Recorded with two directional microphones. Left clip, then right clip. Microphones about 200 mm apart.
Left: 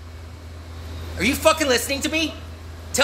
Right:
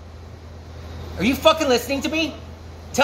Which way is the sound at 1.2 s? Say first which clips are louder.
Right 1 dB; centre (ahead or behind).